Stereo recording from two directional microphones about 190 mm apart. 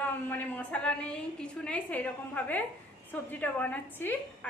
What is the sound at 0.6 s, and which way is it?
A woman's voice, 5° left (ahead or behind).